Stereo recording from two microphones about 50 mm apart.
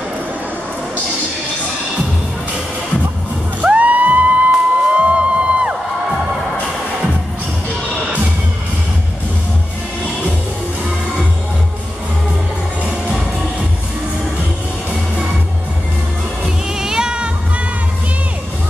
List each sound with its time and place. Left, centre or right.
3.6 s music: right
16.8 s music: centre